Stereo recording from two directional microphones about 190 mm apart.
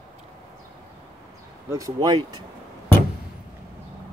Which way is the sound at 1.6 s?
15° right (ahead or behind).